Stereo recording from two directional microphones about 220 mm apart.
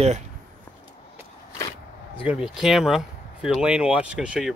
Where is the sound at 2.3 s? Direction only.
Centre (ahead or behind).